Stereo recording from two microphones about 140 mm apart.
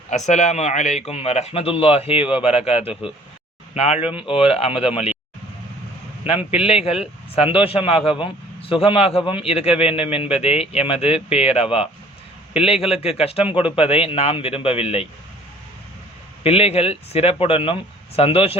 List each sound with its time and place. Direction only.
0.1 s a man's voice: 55° left (ahead or behind)
6.2 s a man's voice: 45° left (ahead or behind)
16.4 s a man's voice: 45° left (ahead or behind)